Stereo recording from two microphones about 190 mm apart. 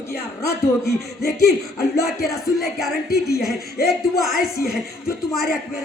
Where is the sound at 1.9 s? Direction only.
55° left (ahead or behind).